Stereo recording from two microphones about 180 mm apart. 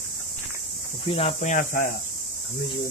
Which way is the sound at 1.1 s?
35° left (ahead or behind).